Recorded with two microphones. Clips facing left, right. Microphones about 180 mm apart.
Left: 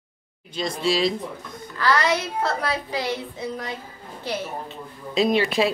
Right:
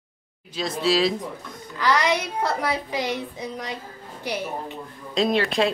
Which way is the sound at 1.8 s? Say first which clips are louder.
Even; 15° right (ahead or behind).